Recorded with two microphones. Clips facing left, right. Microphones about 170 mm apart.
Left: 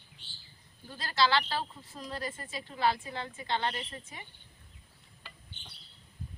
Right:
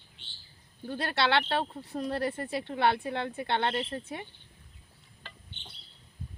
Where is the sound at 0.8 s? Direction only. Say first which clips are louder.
Right 1 dB; 60° right (ahead or behind).